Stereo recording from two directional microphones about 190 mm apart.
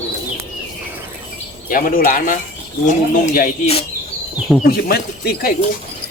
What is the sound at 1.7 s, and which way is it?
Speech, 45° left (ahead or behind).